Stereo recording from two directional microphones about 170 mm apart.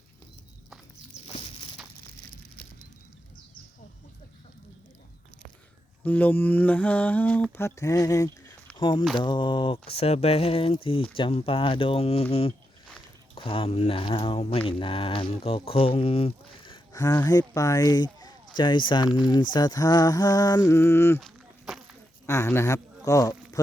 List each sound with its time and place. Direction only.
1.4 s walk: 30° left (ahead or behind)
6.1 s mantra: 10° left (ahead or behind)
8.7 s speech: 25° left (ahead or behind)
21.2 s walk: centre (ahead or behind)
22.3 s speech: 15° left (ahead or behind)